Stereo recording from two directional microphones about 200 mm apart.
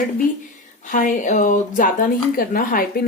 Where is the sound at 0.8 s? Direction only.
40° left (ahead or behind).